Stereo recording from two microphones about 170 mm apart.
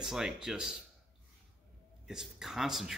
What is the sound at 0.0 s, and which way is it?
Speech, 5° right (ahead or behind).